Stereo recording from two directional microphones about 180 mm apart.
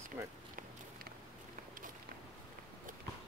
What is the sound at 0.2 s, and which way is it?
Speech, 15° right (ahead or behind).